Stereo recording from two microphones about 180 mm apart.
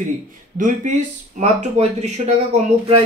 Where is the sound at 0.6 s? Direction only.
45° right (ahead or behind).